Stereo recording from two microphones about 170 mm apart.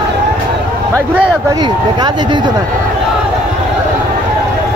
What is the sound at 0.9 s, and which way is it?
Speech, 20° right (ahead or behind).